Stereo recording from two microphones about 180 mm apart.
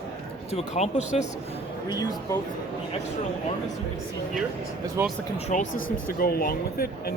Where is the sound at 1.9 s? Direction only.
20° left (ahead or behind).